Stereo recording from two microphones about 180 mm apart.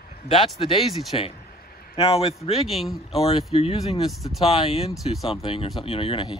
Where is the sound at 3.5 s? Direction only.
35° left (ahead or behind).